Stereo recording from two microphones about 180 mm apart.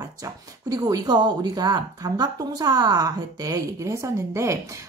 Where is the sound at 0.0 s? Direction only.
20° right (ahead or behind).